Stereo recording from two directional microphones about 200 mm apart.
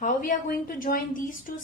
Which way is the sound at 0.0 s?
40° left (ahead or behind).